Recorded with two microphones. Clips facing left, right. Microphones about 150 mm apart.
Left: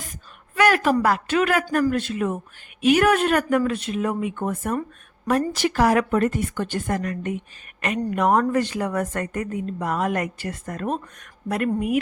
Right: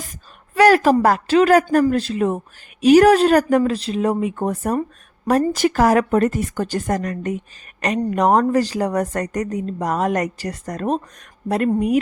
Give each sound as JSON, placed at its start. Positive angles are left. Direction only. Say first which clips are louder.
{"t": 0.5, "sound": "a woman's voice", "louder": "right 6 dB", "side_deg": -35}